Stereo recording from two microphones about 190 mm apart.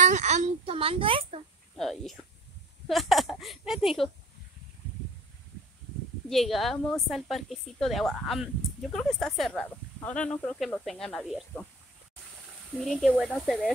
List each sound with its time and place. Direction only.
0.0 s speech: 35° right (ahead or behind)
1.8 s speech: centre (ahead or behind)
6.2 s speech: centre (ahead or behind)
12.7 s speech: centre (ahead or behind)